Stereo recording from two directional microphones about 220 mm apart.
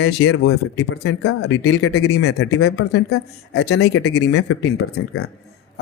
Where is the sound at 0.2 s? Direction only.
75° left (ahead or behind).